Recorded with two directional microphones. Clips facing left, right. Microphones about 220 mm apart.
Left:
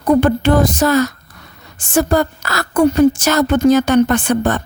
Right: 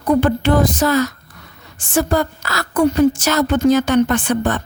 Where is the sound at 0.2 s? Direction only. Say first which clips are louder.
Left 2 dB; 45° left (ahead or behind).